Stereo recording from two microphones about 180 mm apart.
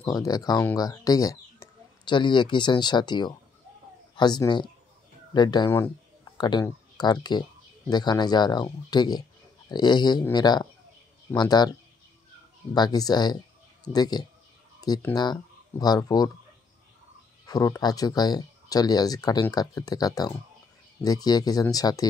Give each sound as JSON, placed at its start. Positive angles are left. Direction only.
{"t": 0.0, "sound": "speech", "side_deg": 20}
{"t": 12.7, "sound": "speech", "side_deg": 20}
{"t": 17.5, "sound": "speech", "side_deg": 20}